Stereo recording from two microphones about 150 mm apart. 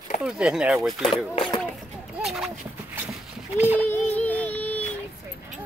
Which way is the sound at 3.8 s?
10° left (ahead or behind).